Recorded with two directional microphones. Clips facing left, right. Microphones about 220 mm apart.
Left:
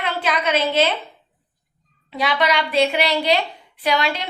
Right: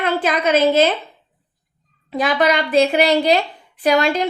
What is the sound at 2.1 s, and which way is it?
A woman's voice, 45° right (ahead or behind).